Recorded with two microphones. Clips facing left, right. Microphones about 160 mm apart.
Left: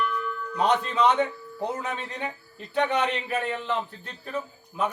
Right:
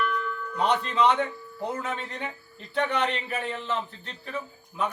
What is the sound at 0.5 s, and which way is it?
A man's voice, 15° left (ahead or behind).